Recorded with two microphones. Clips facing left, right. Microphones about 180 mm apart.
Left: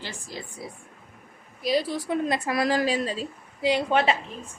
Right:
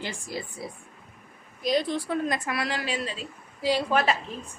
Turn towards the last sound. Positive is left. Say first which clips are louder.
# left 2 dB
turn(degrees=25)  # may be behind; listen again after turning